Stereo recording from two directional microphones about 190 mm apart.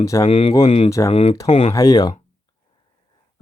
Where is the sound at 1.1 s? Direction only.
30° left (ahead or behind).